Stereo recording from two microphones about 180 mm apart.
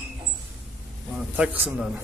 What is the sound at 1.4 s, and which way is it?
Speech, 5° right (ahead or behind).